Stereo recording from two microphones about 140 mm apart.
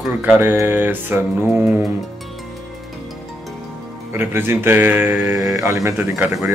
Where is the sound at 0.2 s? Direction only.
15° right (ahead or behind).